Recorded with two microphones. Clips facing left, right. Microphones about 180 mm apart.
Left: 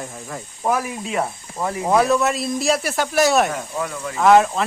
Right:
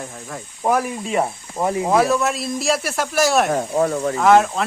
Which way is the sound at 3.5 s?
40° right (ahead or behind).